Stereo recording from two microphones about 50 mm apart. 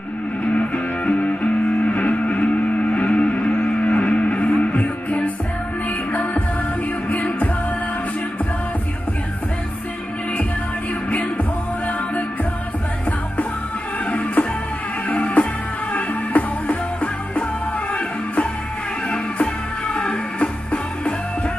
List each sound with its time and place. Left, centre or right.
0.5 s music: left
7.1 s music: left
15.0 s music: left